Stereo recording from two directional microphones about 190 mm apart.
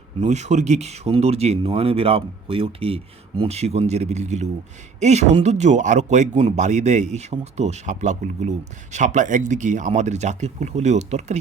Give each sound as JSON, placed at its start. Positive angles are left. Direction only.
{"t": 0.2, "sound": "speech", "side_deg": -35}